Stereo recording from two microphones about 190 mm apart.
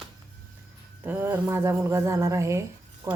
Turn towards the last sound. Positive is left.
turn(degrees=-15)  # may be behind; listen again after turning